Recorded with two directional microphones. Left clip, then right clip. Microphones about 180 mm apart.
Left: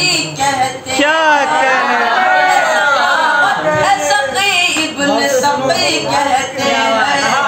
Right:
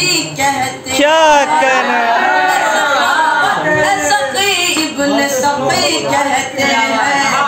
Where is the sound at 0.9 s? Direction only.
20° right (ahead or behind).